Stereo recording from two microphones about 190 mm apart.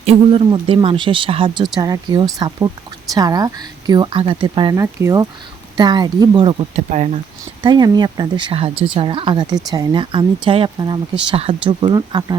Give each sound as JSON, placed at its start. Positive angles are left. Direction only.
{"t": 0.0, "sound": "speech", "side_deg": -30}
{"t": 7.6, "sound": "speech", "side_deg": -25}